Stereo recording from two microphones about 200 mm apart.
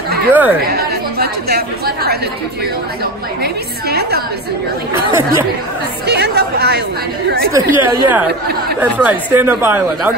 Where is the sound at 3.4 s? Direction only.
50° right (ahead or behind).